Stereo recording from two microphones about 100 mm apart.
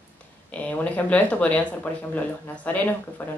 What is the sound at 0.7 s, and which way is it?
Speech, 15° left (ahead or behind).